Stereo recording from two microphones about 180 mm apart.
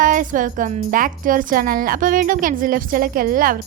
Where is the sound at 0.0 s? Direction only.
50° right (ahead or behind).